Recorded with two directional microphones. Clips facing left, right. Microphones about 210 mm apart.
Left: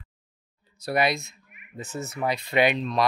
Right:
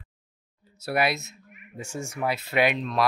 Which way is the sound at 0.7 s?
5° right (ahead or behind).